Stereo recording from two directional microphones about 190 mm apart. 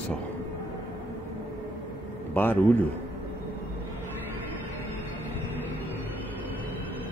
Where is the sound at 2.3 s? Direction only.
10° left (ahead or behind).